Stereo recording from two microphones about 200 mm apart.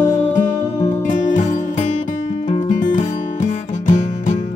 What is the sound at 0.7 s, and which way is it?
Music, 40° left (ahead or behind).